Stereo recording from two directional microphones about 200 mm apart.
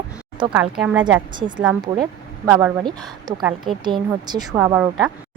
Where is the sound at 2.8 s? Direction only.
20° right (ahead or behind).